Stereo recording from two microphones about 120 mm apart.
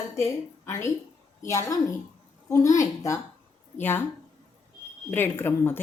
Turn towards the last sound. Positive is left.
turn(degrees=20)  # may be behind; listen again after turning